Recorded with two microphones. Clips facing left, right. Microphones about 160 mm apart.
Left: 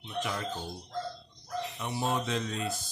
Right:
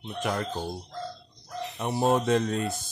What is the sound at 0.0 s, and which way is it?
Speech, 55° right (ahead or behind).